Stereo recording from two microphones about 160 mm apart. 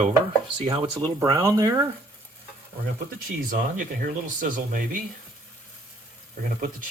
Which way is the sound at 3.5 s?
60° right (ahead or behind).